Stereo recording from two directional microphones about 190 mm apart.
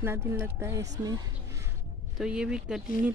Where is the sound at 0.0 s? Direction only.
10° right (ahead or behind).